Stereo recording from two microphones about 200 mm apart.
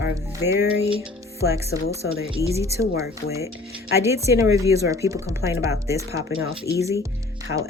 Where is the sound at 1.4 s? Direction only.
55° left (ahead or behind).